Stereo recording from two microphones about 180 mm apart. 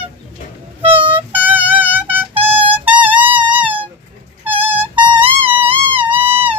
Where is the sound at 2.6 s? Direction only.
30° right (ahead or behind).